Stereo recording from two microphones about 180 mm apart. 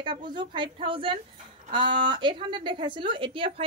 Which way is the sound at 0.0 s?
25° right (ahead or behind).